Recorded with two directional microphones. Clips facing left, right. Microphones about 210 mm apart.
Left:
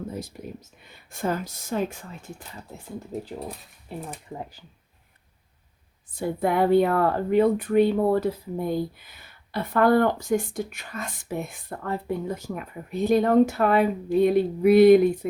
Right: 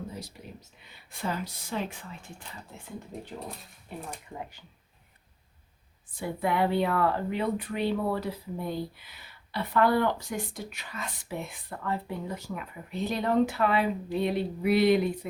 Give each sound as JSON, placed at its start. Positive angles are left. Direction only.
{"t": 0.1, "sound": "whispering", "side_deg": 50}
{"t": 1.1, "sound": "speech", "side_deg": 45}
{"t": 3.1, "sound": "speech", "side_deg": 5}
{"t": 6.1, "sound": "speech", "side_deg": 45}